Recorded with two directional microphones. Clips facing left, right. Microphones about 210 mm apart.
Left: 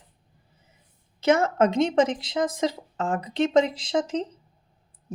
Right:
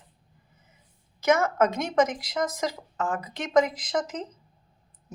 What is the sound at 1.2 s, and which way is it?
Speech, 30° left (ahead or behind).